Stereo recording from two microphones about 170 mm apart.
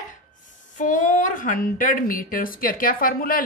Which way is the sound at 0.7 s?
50° left (ahead or behind).